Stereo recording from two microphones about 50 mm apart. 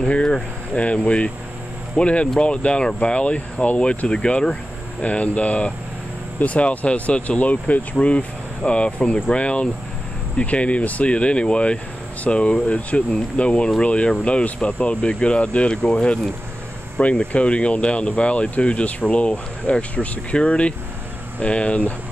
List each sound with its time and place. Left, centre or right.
0.0 s speech: left
4.1 s speech: centre